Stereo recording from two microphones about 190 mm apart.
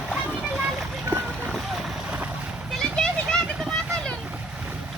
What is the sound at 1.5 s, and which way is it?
Boat, centre (ahead or behind).